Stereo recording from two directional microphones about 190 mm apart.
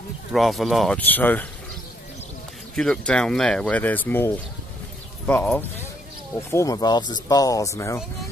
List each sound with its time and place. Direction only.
0.3 s speech: centre (ahead or behind)
2.7 s speech: 5° left (ahead or behind)
6.5 s speech: 15° left (ahead or behind)